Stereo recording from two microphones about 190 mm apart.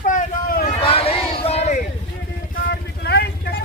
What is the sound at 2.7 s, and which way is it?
Vehicle, 55° left (ahead or behind).